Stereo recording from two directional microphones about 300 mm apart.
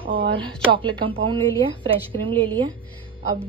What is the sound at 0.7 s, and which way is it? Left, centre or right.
A woman's voice, centre.